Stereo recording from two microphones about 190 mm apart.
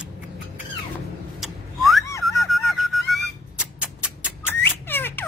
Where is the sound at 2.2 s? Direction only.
Centre (ahead or behind).